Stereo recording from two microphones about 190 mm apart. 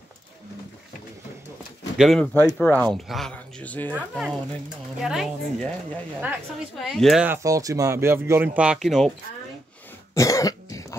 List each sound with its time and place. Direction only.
2.0 s speech: centre (ahead or behind)
7.2 s speech: 15° right (ahead or behind); by 9.1 s centre (ahead or behind)
10.1 s cough: 15° left (ahead or behind)